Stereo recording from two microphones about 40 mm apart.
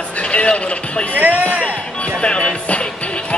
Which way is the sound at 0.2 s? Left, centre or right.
Left.